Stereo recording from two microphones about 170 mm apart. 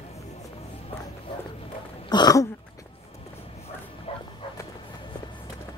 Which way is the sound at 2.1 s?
20° left (ahead or behind).